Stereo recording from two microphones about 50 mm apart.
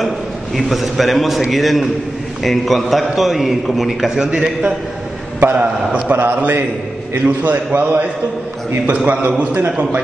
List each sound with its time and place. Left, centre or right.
0.6 s a man's voice: centre
4.1 s a man's voice: centre
5.4 s a man's voice: right